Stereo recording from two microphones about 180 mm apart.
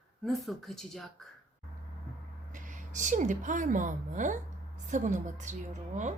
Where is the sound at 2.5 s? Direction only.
45° right (ahead or behind).